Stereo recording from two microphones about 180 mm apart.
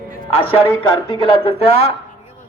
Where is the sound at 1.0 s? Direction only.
30° left (ahead or behind).